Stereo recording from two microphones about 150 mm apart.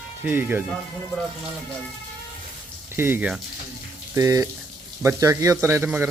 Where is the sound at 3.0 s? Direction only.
15° right (ahead or behind).